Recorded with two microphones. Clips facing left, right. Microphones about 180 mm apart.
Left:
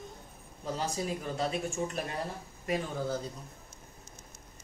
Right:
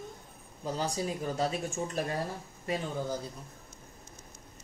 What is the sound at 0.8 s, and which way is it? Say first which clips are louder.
Speech: right 1 dB; 35° right (ahead or behind).